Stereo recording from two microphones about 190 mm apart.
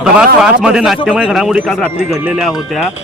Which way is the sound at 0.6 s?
5° right (ahead or behind).